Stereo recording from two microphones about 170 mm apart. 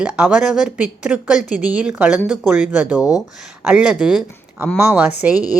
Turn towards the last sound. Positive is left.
turn(degrees=-5)  # may be behind; listen again after turning